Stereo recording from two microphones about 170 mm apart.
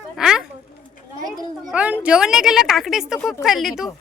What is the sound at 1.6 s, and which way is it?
Speech, 5° right (ahead or behind).